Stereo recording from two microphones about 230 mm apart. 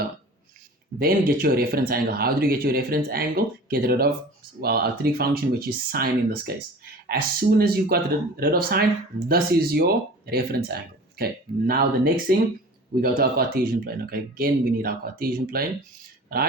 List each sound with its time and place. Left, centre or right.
0.9 s speech: right